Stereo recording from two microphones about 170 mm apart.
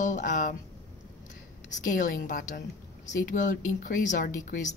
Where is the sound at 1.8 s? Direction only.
50° left (ahead or behind).